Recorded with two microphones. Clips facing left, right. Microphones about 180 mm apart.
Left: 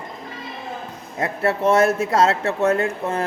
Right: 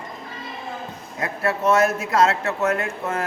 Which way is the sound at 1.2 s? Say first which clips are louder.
Left 3 dB; 30° left (ahead or behind).